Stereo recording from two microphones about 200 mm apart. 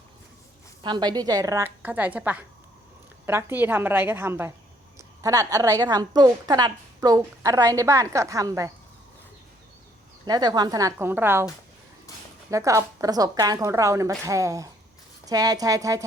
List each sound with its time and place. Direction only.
0.8 s a woman's voice: 20° right (ahead or behind)
10.2 s a woman's voice: 20° right (ahead or behind)
12.5 s a woman's voice: 15° right (ahead or behind)